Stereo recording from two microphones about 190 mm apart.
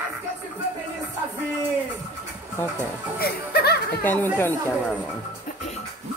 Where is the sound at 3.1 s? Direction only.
55° left (ahead or behind).